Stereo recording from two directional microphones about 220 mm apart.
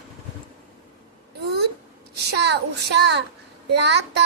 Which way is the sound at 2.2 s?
50° right (ahead or behind).